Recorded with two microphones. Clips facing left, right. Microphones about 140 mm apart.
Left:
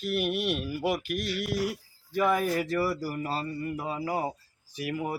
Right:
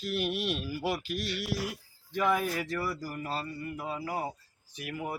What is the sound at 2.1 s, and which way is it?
Speech, 5° left (ahead or behind).